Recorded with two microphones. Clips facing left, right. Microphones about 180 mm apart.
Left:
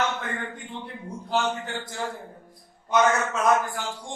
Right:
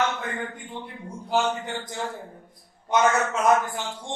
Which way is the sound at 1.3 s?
15° right (ahead or behind).